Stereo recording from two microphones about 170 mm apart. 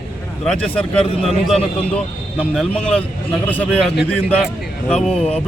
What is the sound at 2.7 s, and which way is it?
Speech, 35° left (ahead or behind).